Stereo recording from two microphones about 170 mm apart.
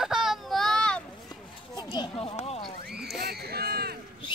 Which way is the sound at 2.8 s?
70° right (ahead or behind).